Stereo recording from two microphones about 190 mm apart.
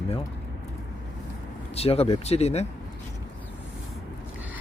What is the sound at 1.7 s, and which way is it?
Speech, 30° left (ahead or behind).